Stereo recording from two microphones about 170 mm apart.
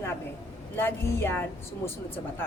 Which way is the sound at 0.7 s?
15° left (ahead or behind).